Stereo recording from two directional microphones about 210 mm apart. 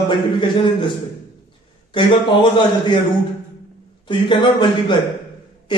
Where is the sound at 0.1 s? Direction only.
25° left (ahead or behind).